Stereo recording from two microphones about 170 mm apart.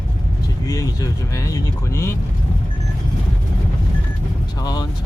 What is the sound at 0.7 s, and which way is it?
Speech, 20° left (ahead or behind).